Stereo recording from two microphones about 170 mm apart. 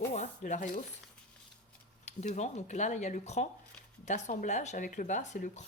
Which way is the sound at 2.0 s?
45° left (ahead or behind).